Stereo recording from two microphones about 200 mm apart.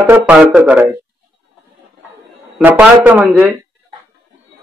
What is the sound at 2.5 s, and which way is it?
Speech, 10° right (ahead or behind).